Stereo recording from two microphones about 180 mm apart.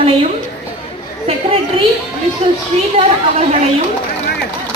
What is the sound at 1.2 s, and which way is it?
Speech, 30° right (ahead or behind).